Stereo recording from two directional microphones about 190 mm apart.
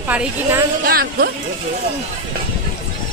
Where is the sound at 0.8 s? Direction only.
50° right (ahead or behind).